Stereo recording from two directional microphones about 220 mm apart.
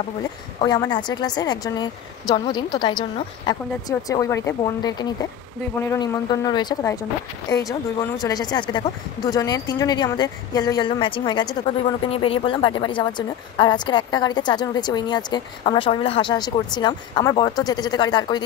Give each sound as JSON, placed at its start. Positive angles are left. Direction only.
{"t": 0.6, "sound": "a woman's voice", "side_deg": 20}